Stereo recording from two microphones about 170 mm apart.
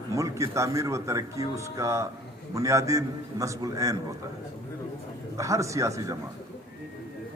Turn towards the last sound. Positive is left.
turn(degrees=-20)  # may be behind; listen again after turning